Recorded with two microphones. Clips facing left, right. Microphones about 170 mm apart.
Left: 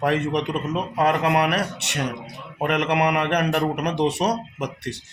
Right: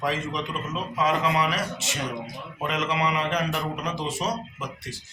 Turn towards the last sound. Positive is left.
turn(degrees=70)  # may be behind; listen again after turning